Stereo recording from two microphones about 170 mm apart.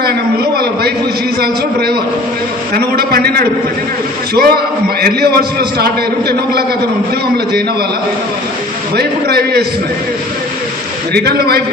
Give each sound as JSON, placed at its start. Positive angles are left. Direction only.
{"t": 0.0, "sound": "a man's voice", "side_deg": -65}
{"t": 9.0, "sound": "a man's voice", "side_deg": -70}
{"t": 11.1, "sound": "a man's voice", "side_deg": -70}